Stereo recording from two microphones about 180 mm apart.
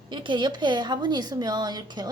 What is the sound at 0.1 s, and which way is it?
Speech, 25° right (ahead or behind).